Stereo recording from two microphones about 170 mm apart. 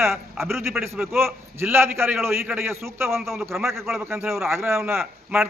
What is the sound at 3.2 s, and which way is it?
A man's voice, centre (ahead or behind).